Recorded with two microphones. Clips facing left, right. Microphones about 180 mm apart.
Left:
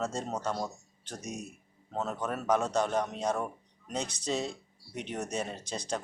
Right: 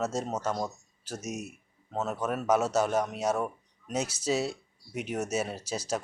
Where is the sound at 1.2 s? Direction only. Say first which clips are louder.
Right 3 dB; 30° left (ahead or behind).